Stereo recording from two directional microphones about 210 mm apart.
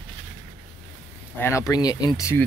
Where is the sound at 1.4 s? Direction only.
15° left (ahead or behind).